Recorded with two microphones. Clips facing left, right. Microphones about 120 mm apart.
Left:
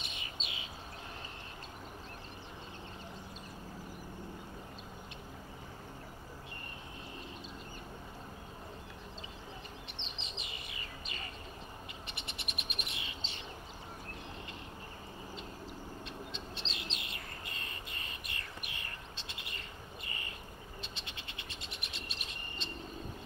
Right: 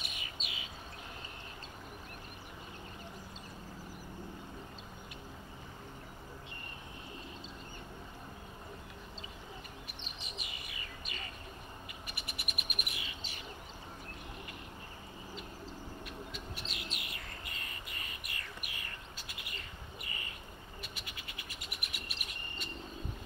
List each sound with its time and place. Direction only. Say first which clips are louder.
0.0 s bird: even; 25° left (ahead or behind)
9.9 s bird: left 1 dB; 25° left (ahead or behind)
16.1 s bird: even; 25° left (ahead or behind)
20.8 s frog: left 1 dB; 25° left (ahead or behind)